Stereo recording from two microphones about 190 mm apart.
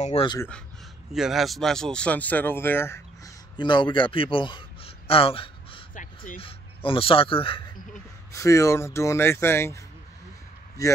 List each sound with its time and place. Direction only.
0.0 s speech: 30° left (ahead or behind)
1.1 s speech: centre (ahead or behind)
3.5 s a man's voice: 25° left (ahead or behind)
8.3 s speech: 15° left (ahead or behind)